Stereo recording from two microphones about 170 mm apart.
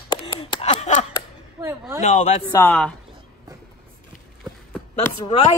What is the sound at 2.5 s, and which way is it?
Speech, 10° left (ahead or behind).